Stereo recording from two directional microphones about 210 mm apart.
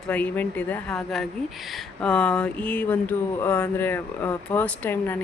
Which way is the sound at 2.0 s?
5° left (ahead or behind).